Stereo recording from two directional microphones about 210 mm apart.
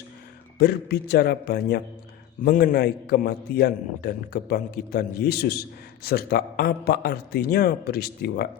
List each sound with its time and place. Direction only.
0.6 s a man's voice: 50° left (ahead or behind)